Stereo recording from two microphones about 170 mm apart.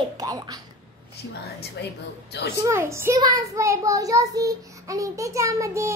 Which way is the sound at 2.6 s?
15° right (ahead or behind).